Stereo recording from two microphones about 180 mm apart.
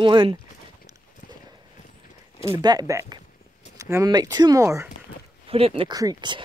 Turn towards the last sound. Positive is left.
turn(degrees=-25)  # may be behind; listen again after turning